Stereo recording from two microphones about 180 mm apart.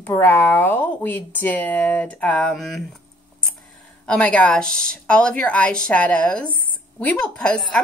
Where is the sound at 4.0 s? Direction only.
5° left (ahead or behind).